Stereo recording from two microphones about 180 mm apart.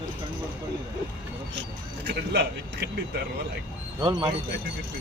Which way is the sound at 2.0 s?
65° right (ahead or behind).